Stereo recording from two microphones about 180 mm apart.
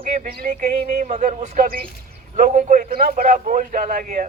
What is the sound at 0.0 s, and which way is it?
Speech, 50° right (ahead or behind).